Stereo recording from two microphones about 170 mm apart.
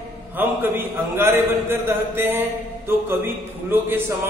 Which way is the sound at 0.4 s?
10° right (ahead or behind).